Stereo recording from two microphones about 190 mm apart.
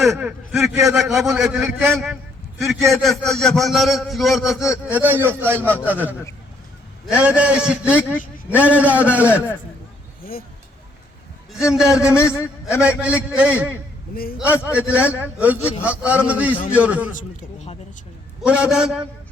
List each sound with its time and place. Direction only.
0.0 s a man's voice: 5° right (ahead or behind)
11.5 s a man's voice: 5° right (ahead or behind)
17.2 s a man's voice: 35° left (ahead or behind)
18.4 s a man's voice: 5° right (ahead or behind)